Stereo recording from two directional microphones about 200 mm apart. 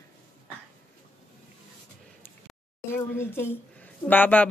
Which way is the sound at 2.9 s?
10° left (ahead or behind).